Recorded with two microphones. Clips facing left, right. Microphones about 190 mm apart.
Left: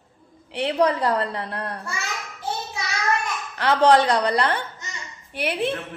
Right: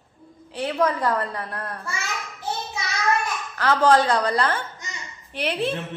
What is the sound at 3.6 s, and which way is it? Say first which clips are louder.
A woman's voice: left 1 dB; 20° left (ahead or behind).